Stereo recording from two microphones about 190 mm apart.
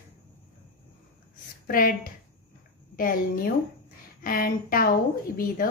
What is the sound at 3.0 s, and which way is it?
Speech, 45° left (ahead or behind).